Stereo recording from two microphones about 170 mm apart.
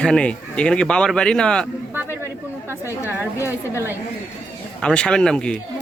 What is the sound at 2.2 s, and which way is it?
Chatter, 15° right (ahead or behind).